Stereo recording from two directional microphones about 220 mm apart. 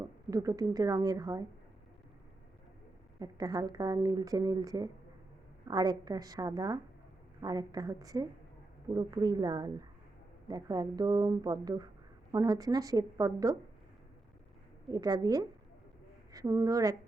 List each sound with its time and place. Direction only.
0.0 s speech: 15° right (ahead or behind)
3.2 s speech: 15° right (ahead or behind)
14.8 s speech: 20° right (ahead or behind)